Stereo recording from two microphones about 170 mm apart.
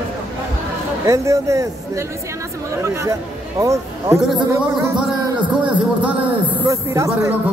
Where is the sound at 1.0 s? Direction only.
20° right (ahead or behind).